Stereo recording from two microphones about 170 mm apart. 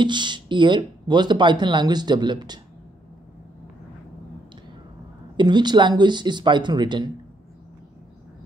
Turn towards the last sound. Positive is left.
turn(degrees=-25)  # may be behind; listen again after turning